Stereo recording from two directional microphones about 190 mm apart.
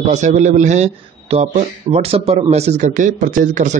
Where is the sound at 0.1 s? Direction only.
40° right (ahead or behind).